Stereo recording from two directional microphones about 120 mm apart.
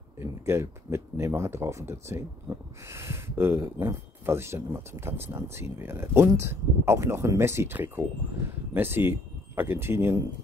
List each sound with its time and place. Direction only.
0.2 s speech: 20° right (ahead or behind)